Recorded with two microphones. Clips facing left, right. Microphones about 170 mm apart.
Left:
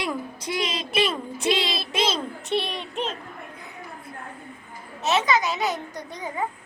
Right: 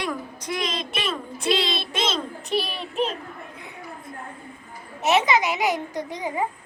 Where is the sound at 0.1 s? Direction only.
30° left (ahead or behind).